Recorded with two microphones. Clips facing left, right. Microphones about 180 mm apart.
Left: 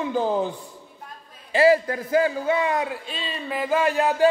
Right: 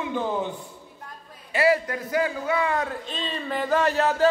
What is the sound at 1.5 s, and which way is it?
Speech, 30° left (ahead or behind).